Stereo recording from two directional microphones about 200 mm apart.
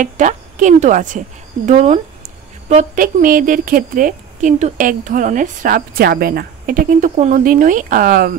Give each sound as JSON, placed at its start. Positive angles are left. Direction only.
{"t": 0.0, "sound": "speech", "side_deg": -40}